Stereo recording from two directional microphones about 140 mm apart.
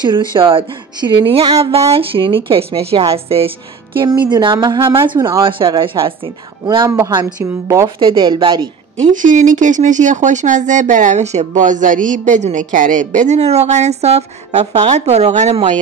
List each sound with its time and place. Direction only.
0.0 s a woman's voice: 35° right (ahead or behind)
4.0 s a woman's voice: 30° right (ahead or behind)
7.6 s speech: 20° right (ahead or behind)
8.0 s a woman's voice: 35° right (ahead or behind)
9.1 s speech: 65° right (ahead or behind)